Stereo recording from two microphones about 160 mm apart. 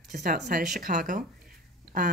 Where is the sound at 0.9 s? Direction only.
50° right (ahead or behind).